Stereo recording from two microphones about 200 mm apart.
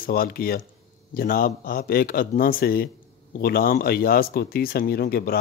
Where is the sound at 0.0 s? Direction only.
50° left (ahead or behind).